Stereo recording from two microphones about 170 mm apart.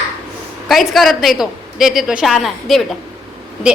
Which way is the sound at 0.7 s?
Centre (ahead or behind).